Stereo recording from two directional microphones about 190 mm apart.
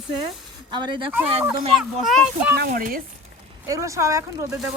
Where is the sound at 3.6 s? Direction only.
15° right (ahead or behind).